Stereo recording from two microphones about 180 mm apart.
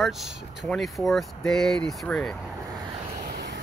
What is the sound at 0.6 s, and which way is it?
Speech, centre (ahead or behind).